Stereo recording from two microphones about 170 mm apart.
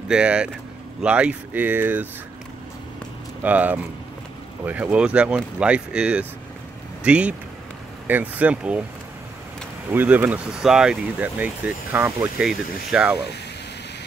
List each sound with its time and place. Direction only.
0.1 s speech: 5° right (ahead or behind)
3.4 s speech: 10° right (ahead or behind)
9.9 s speech: 10° right (ahead or behind)